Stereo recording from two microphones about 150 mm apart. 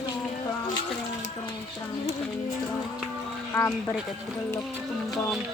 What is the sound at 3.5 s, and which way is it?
Speech, 15° left (ahead or behind).